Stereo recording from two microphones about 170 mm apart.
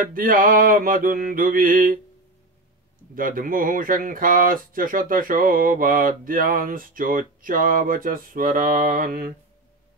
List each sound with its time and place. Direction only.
0.0 s mantra: 55° right (ahead or behind)
3.2 s speech: 55° right (ahead or behind)